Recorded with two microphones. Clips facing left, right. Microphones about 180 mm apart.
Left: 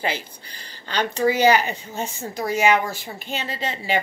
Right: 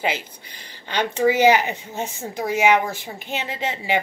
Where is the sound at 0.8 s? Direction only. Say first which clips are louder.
Right 1 dB; 15° right (ahead or behind).